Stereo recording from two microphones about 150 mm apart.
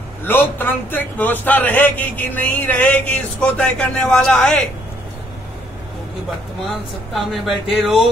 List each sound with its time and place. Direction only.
0.2 s a man's voice: 15° left (ahead or behind)
7.2 s speech: centre (ahead or behind)